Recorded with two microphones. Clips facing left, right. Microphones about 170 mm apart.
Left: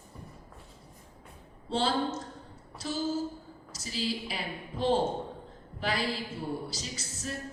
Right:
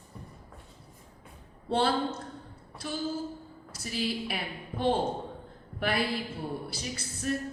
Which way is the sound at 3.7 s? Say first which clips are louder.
Right 1 dB; 60° right (ahead or behind).